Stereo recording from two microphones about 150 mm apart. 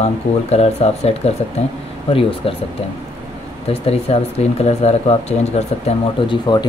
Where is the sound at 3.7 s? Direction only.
40° left (ahead or behind).